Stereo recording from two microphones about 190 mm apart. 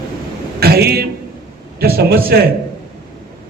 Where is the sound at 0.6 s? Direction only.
55° right (ahead or behind).